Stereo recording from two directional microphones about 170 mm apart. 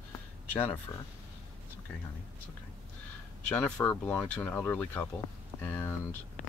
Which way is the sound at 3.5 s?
10° left (ahead or behind).